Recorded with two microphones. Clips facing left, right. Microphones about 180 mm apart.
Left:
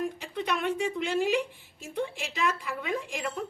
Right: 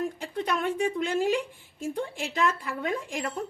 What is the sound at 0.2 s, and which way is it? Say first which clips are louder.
A woman's voice: right 2 dB; 50° right (ahead or behind).